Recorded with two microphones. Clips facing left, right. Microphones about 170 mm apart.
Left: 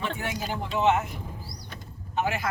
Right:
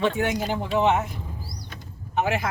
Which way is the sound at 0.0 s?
75° right (ahead or behind).